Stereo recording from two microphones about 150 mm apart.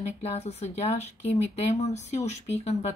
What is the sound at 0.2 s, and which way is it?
Speech, 45° left (ahead or behind).